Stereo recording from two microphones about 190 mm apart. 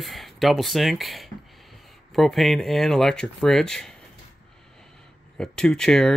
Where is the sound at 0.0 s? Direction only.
Centre (ahead or behind).